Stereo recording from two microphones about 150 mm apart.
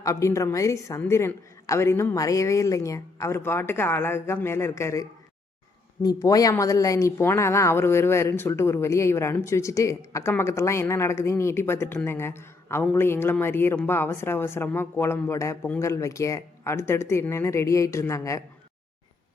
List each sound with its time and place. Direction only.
0.0 s a woman's voice: 20° left (ahead or behind)